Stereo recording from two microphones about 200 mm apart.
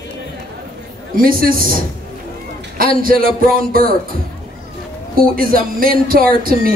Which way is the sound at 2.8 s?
45° right (ahead or behind).